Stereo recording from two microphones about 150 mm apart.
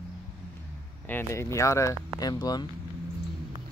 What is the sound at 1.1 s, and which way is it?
Speech, 15° left (ahead or behind).